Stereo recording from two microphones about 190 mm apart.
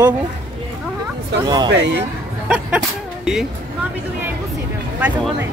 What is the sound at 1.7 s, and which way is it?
Speech, 70° right (ahead or behind).